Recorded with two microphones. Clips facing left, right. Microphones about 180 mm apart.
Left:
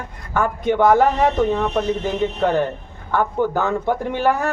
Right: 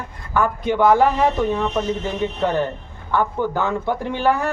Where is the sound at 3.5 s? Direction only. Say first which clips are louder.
Left 2 dB; 45° left (ahead or behind).